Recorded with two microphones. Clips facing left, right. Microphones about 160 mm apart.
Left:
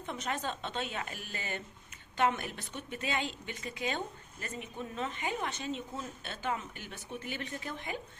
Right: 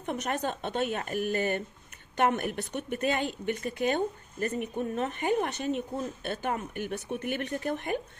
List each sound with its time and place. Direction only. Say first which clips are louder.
0.0 s a woman's voice: right 5 dB; 55° right (ahead or behind)